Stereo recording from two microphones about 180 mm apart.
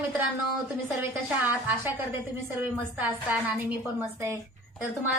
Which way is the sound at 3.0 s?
10° right (ahead or behind).